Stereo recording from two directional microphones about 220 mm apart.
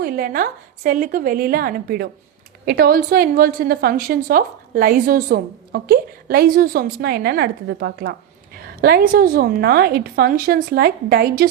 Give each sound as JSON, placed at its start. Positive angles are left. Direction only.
{"t": 0.0, "sound": "a woman's voice", "side_deg": -40}